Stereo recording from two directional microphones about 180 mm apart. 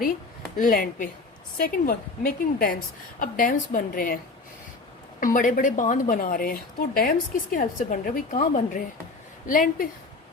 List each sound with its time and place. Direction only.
0.5 s a woman's voice: 50° left (ahead or behind)
5.2 s a woman's voice: 50° left (ahead or behind)